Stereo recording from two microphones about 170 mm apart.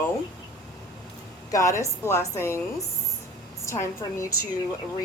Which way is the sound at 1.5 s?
20° left (ahead or behind).